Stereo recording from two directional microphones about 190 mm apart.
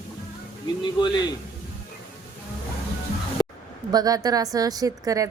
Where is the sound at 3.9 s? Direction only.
20° right (ahead or behind).